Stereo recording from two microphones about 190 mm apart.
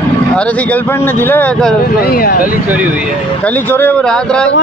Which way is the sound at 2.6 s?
10° right (ahead or behind).